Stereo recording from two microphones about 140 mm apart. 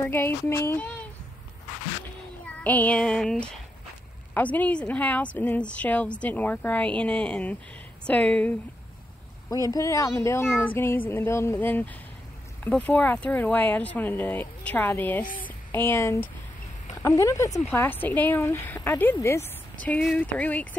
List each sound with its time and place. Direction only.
0.0 s speech: 15° left (ahead or behind)
2.4 s child singing: 10° left (ahead or behind)
4.3 s speech: 10° left (ahead or behind)
9.7 s a woman's voice: 20° left (ahead or behind)